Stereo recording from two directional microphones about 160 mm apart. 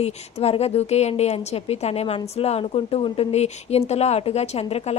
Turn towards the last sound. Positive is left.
turn(degrees=40)  # may be behind; listen again after turning